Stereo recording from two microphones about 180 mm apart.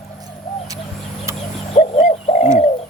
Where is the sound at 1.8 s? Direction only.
40° left (ahead or behind).